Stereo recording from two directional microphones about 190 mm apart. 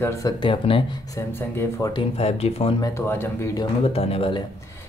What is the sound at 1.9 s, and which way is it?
Speech, 30° left (ahead or behind).